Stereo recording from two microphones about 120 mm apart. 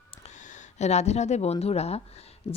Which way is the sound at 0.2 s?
85° left.